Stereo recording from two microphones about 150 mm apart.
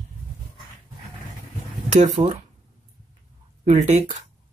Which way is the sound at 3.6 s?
55° right (ahead or behind).